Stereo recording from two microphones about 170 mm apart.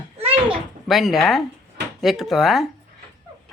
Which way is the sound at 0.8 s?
Centre (ahead or behind).